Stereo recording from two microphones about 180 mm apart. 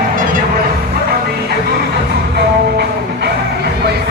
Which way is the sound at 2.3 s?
65° right (ahead or behind).